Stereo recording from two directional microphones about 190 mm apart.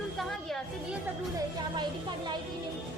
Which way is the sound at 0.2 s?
Centre (ahead or behind).